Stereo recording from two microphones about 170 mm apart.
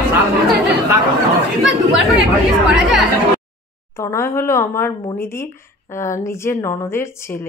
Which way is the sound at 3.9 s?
15° left (ahead or behind).